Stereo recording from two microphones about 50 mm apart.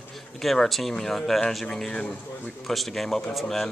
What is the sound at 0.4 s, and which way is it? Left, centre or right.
Speech, centre.